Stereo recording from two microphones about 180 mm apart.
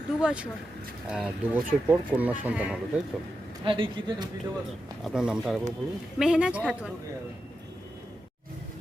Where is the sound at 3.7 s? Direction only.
25° right (ahead or behind).